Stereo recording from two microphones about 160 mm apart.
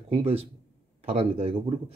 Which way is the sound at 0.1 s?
40° right (ahead or behind).